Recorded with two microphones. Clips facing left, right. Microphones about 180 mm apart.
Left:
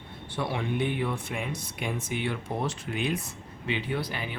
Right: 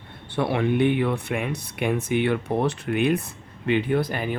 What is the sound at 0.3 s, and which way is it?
Speech, 60° right (ahead or behind).